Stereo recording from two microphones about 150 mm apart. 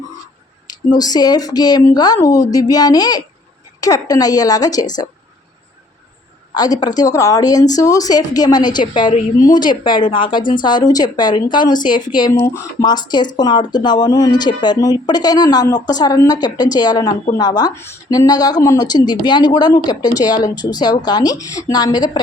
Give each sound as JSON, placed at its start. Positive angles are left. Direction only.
{"t": 0.7, "sound": "a woman's voice", "side_deg": 25}
{"t": 6.5, "sound": "a woman's voice", "side_deg": 25}